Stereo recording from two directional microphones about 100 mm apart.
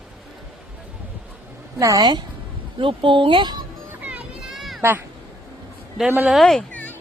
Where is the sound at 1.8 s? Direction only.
35° right (ahead or behind).